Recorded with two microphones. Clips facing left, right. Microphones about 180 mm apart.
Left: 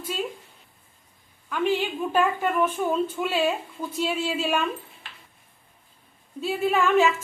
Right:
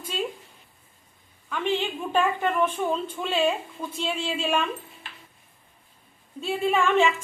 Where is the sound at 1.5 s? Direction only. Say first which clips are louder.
Left 2 dB; 5° left (ahead or behind).